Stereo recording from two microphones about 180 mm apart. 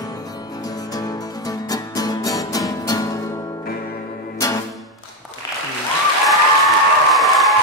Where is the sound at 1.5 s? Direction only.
20° left (ahead or behind).